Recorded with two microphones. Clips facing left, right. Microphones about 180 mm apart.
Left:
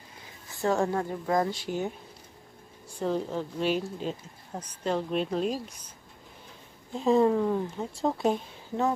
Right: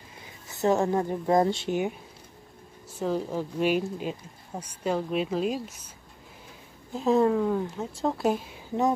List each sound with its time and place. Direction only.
0.5 s a woman's voice: 20° right (ahead or behind)
3.0 s speech: 5° right (ahead or behind)
6.9 s speech: centre (ahead or behind)